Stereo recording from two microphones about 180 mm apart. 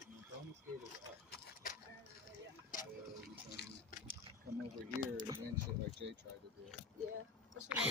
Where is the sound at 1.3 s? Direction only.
50° left (ahead or behind).